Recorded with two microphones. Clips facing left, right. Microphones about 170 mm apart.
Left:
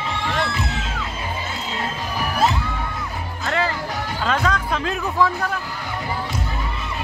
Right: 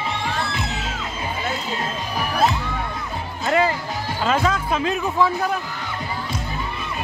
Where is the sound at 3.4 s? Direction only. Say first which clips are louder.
Right 4 dB; 15° right (ahead or behind).